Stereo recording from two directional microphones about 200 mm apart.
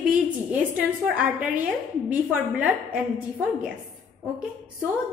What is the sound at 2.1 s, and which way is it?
Speech, 5° right (ahead or behind).